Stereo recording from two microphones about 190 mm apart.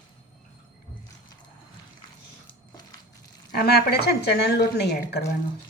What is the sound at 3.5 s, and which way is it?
Speech, 55° left (ahead or behind).